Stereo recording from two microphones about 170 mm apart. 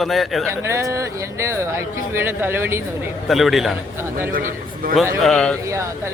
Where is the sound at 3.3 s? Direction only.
Centre (ahead or behind).